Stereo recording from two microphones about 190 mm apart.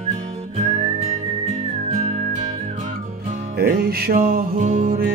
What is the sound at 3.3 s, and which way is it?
Music, 55° right (ahead or behind).